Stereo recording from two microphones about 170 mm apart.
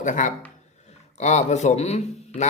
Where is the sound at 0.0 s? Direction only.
45° left (ahead or behind).